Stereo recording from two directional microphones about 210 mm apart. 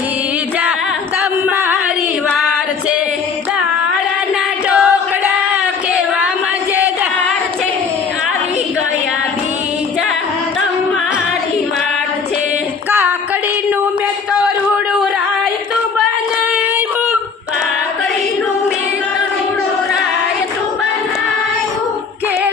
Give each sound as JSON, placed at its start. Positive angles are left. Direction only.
{"t": 1.5, "sound": "a sound", "side_deg": -10}
{"t": 4.7, "sound": "choir", "side_deg": -5}
{"t": 12.9, "sound": "music", "side_deg": -5}